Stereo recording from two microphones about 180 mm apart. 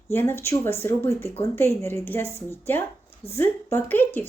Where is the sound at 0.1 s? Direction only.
10° left (ahead or behind).